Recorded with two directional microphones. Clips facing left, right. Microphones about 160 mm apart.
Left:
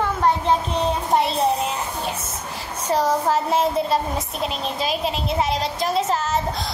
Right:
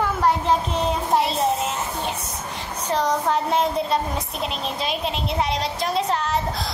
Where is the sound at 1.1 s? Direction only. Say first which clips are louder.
Left 2 dB; centre (ahead or behind).